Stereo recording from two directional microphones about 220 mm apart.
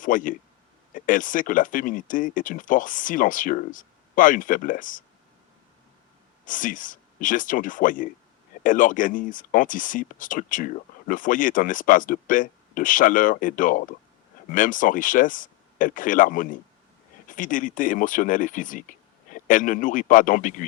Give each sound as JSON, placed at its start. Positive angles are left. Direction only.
{"t": 0.0, "sound": "speech", "side_deg": 35}
{"t": 6.4, "sound": "speech", "side_deg": 35}